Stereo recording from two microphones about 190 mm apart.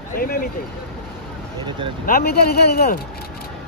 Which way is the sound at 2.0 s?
50° left (ahead or behind).